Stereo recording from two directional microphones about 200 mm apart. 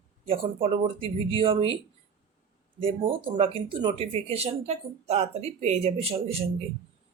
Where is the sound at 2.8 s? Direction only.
25° right (ahead or behind).